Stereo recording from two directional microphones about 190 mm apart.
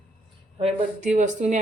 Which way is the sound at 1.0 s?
40° right (ahead or behind).